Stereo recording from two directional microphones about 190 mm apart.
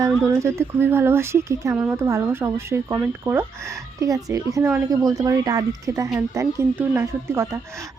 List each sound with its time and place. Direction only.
0.3 s speech: 15° right (ahead or behind)